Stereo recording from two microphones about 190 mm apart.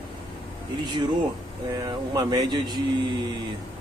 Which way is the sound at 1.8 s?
20° right (ahead or behind).